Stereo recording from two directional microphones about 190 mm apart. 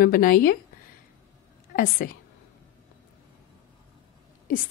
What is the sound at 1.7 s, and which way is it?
Speech, 45° left (ahead or behind).